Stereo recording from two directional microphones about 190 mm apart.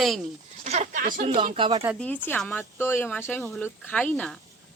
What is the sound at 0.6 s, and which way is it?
Speech, 35° right (ahead or behind).